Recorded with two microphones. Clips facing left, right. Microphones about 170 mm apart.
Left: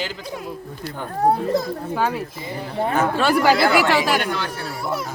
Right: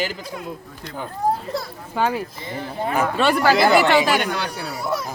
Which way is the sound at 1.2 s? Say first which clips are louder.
Left 3 dB; 70° left (ahead or behind).